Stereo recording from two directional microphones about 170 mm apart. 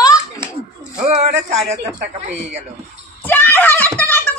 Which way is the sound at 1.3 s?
40° right (ahead or behind).